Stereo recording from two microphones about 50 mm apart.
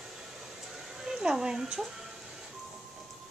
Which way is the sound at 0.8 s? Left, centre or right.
Centre.